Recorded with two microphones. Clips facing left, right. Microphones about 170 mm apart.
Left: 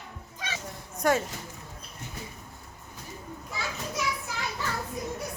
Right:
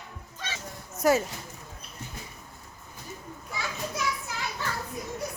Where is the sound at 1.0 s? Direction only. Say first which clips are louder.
Right 2 dB; 5° right (ahead or behind).